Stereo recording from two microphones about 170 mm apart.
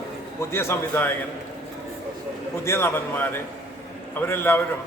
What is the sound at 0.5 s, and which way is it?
Speech, 15° left (ahead or behind).